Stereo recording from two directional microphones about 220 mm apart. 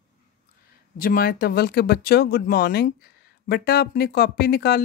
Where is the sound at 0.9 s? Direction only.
40° left (ahead or behind).